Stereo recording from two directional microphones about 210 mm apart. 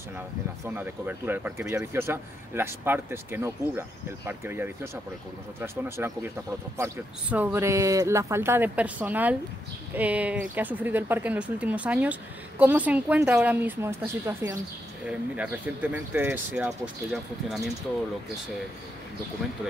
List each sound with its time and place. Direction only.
0.7 s speech: 10° right (ahead or behind)